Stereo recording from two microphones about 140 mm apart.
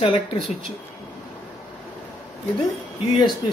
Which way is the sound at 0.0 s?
40° left (ahead or behind).